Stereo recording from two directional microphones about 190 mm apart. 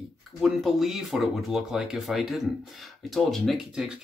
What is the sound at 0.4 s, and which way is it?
Speech, centre (ahead or behind).